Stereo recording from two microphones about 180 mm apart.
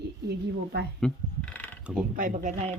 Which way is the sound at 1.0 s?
5° left (ahead or behind).